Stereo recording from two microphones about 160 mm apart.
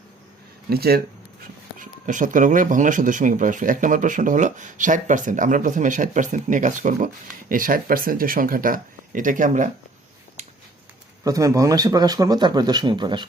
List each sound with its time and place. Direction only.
0.7 s speech: 75° right (ahead or behind)
1.8 s speech: 55° right (ahead or behind)
11.2 s speech: 20° right (ahead or behind)